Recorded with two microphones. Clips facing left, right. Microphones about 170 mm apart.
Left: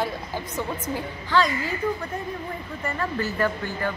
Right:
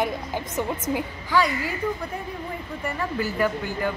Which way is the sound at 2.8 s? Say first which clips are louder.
Even; 10° right (ahead or behind).